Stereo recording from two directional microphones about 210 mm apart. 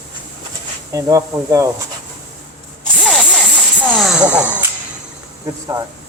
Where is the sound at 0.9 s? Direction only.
15° right (ahead or behind).